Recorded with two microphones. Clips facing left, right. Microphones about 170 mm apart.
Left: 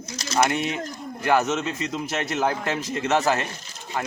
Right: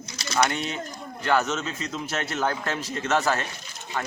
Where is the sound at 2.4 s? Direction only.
10° left (ahead or behind).